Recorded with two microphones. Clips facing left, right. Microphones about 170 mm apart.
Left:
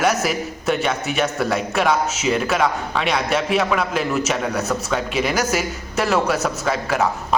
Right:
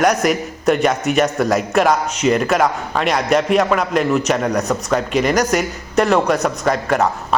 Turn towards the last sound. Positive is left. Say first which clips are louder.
# right 4 dB
turn(degrees=5)  # may be behind; listen again after turning